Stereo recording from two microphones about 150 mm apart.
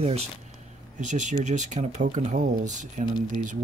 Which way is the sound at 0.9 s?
55° right (ahead or behind).